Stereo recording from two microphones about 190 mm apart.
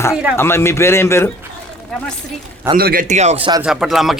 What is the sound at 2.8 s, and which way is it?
Speech, 55° right (ahead or behind).